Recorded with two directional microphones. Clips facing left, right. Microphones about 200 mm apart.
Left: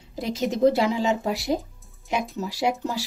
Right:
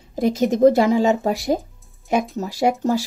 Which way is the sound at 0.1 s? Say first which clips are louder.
Right 7 dB; 50° right (ahead or behind).